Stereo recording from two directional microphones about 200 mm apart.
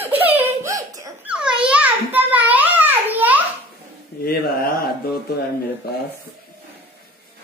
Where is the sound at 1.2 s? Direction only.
5° right (ahead or behind).